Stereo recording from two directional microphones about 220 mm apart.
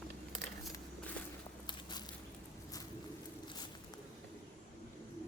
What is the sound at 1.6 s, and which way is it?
Biting, 20° left (ahead or behind).